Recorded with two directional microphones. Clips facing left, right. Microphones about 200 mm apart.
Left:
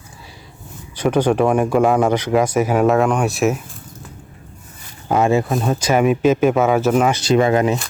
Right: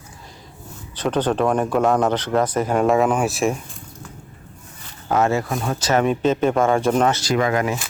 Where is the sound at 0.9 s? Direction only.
10° left (ahead or behind).